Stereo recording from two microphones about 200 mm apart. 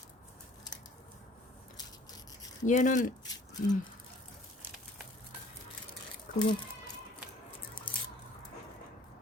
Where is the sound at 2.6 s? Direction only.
40° left (ahead or behind).